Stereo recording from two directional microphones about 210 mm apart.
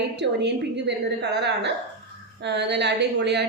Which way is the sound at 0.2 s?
55° right (ahead or behind).